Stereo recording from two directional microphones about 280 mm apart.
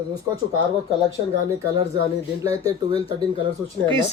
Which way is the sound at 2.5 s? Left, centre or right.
Centre.